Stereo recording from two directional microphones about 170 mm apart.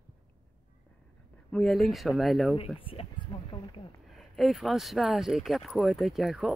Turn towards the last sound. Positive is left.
turn(degrees=0)  # may be behind; listen again after turning